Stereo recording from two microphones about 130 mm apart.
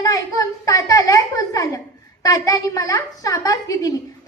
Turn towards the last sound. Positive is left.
turn(degrees=25)  # may be behind; listen again after turning